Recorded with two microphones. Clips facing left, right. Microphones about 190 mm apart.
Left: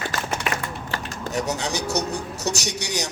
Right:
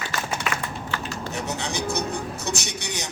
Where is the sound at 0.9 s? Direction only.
40° left (ahead or behind).